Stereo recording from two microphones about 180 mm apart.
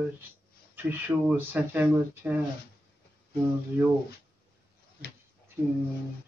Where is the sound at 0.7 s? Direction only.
10° right (ahead or behind).